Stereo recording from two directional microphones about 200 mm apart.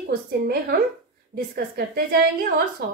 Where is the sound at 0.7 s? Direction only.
50° right (ahead or behind).